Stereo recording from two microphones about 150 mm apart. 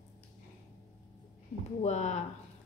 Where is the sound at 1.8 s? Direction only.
50° left (ahead or behind).